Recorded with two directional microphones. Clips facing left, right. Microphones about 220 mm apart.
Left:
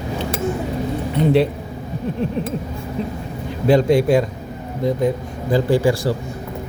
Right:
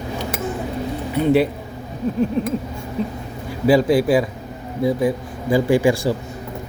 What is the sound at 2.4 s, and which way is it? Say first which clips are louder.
Speech: right 2 dB; centre (ahead or behind).